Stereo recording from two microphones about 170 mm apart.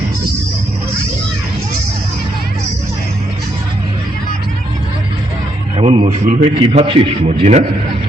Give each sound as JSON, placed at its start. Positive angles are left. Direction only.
{"t": 5.7, "sound": "a man's voice", "side_deg": -40}